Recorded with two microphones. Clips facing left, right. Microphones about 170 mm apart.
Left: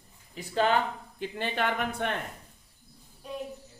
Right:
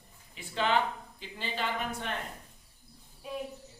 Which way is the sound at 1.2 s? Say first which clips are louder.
Left 6 dB; 60° left (ahead or behind).